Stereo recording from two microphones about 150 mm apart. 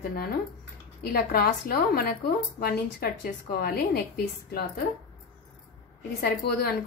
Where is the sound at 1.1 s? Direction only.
90° left.